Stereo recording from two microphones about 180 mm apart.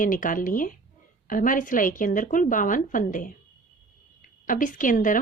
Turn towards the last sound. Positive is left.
turn(degrees=45)  # may be behind; listen again after turning